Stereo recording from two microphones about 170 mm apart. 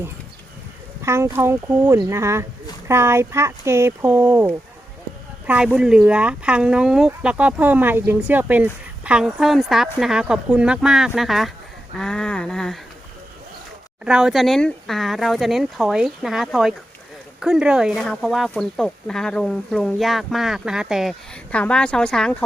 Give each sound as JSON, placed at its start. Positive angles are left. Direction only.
{"t": 1.0, "sound": "speech", "side_deg": -15}
{"t": 14.0, "sound": "speech", "side_deg": -5}